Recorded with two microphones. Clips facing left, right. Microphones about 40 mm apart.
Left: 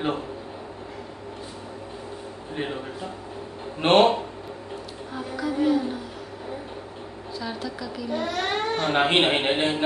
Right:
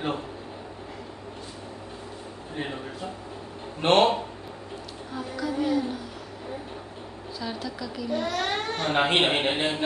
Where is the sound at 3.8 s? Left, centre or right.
Left.